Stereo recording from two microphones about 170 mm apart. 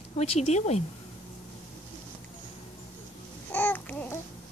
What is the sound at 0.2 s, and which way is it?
Speech, 40° left (ahead or behind).